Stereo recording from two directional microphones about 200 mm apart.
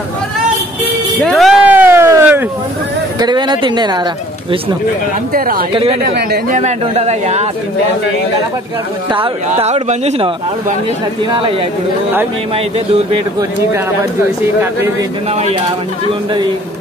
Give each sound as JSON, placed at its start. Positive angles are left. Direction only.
{"t": 1.2, "sound": "a sound", "side_deg": 0}
{"t": 3.2, "sound": "speech", "side_deg": -20}
{"t": 5.3, "sound": "speech", "side_deg": -45}
{"t": 6.5, "sound": "a man's voice", "side_deg": -35}
{"t": 9.1, "sound": "speech", "side_deg": -30}
{"t": 12.7, "sound": "speech", "side_deg": -25}